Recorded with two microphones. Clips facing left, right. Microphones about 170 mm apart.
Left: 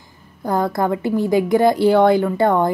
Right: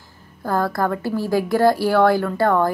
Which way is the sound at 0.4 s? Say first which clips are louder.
Left 2 dB; 20° left (ahead or behind).